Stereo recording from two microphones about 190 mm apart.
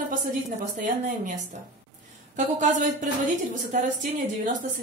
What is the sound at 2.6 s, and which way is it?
A woman's voice, 40° right (ahead or behind).